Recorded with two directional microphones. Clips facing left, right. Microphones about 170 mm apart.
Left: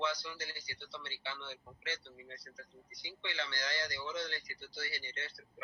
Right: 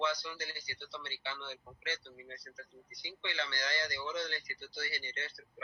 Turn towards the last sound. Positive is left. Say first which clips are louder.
# right 2 dB
turn(degrees=-65)  # may be behind; listen again after turning